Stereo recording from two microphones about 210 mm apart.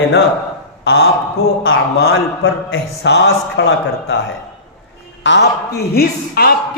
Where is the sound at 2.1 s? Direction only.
70° left (ahead or behind).